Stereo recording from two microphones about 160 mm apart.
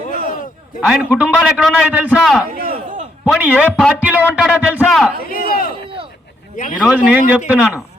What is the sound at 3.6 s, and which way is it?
Speech, 5° left (ahead or behind).